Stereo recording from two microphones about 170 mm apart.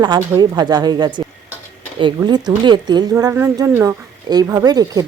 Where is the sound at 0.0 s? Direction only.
25° right (ahead or behind).